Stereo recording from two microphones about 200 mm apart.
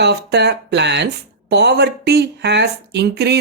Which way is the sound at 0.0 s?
55° right (ahead or behind).